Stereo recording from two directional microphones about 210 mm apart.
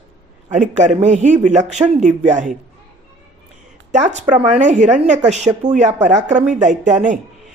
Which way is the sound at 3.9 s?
35° right (ahead or behind).